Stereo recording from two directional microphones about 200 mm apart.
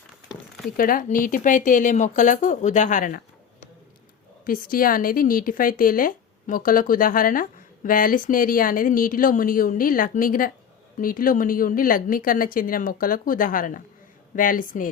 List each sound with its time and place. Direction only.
0.3 s a sound: centre (ahead or behind)
0.8 s speech: 45° left (ahead or behind)
4.4 s speech: 45° left (ahead or behind)